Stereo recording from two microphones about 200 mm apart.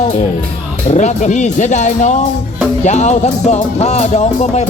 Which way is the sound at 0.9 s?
35° left (ahead or behind).